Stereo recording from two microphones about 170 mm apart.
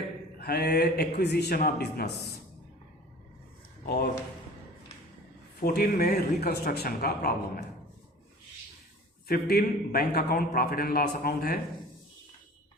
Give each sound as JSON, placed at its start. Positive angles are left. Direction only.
{"t": 0.3, "sound": "mantra", "side_deg": 65}
{"t": 1.2, "sound": "a man's voice", "side_deg": 75}
{"t": 3.8, "sound": "a man's voice", "side_deg": 70}
{"t": 5.5, "sound": "a man's voice", "side_deg": 65}
{"t": 9.2, "sound": "a man's voice", "side_deg": 65}